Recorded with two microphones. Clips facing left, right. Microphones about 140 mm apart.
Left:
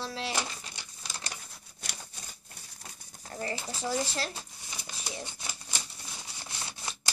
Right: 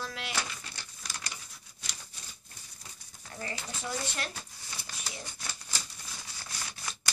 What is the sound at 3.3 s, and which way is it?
Speech, 30° left (ahead or behind).